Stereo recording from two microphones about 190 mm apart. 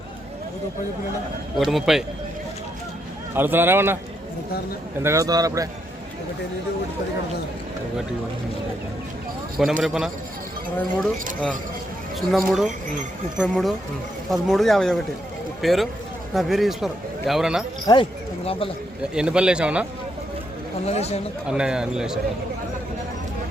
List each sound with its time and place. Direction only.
1.5 s a man's voice: centre (ahead or behind)
3.3 s speech: 10° right (ahead or behind)
5.0 s speech: 15° right (ahead or behind)
9.8 s a man's voice: 5° right (ahead or behind)
17.9 s speech: 20° left (ahead or behind)
19.1 s a man's voice: 5° right (ahead or behind)
20.8 s speech: 35° left (ahead or behind)
21.4 s a man's voice: 5° right (ahead or behind)